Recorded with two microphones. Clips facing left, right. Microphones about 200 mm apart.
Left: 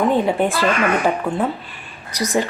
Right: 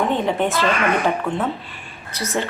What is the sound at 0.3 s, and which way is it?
Speech, 10° left (ahead or behind).